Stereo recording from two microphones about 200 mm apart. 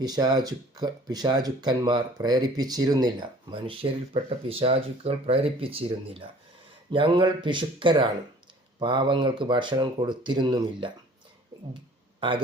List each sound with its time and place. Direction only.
0.0 s speech: 20° right (ahead or behind)